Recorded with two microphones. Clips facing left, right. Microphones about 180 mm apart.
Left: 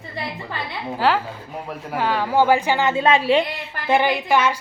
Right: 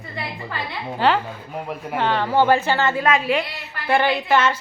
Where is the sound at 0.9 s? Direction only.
5° left (ahead or behind); by 3.4 s 30° left (ahead or behind).